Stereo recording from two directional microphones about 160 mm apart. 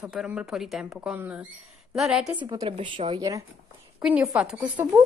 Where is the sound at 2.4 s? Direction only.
30° right (ahead or behind).